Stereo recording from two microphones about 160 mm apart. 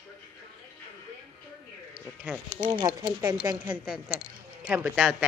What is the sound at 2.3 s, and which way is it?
Speech, 10° right (ahead or behind).